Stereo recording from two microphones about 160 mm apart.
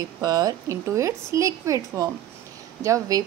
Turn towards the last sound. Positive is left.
turn(degrees=-20)  # may be behind; listen again after turning